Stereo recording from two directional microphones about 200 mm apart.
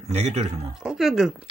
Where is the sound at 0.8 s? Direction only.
5° right (ahead or behind).